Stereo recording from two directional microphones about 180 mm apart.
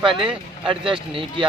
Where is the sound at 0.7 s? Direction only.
30° right (ahead or behind).